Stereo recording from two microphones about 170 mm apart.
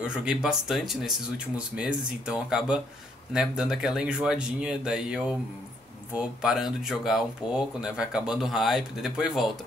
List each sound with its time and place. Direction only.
0.0 s speech: 5° right (ahead or behind)